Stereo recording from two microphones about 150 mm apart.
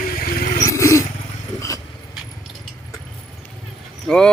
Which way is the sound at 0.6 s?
20° left (ahead or behind).